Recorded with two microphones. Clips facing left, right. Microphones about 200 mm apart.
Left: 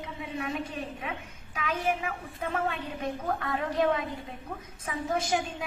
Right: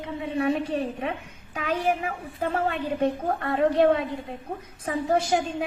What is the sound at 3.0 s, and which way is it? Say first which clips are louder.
A woman's voice: right 5 dB; 35° right (ahead or behind).